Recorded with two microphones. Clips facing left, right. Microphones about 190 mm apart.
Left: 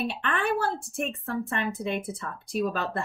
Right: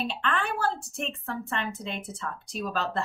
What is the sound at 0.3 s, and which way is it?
A woman's voice, 55° left (ahead or behind).